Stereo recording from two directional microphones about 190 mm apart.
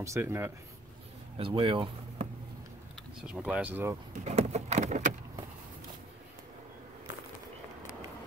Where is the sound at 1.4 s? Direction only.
25° right (ahead or behind).